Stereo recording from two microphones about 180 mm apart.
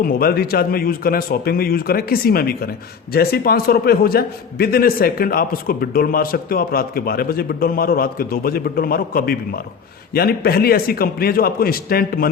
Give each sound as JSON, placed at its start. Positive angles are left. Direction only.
{"t": 0.0, "sound": "a man's voice", "side_deg": 55}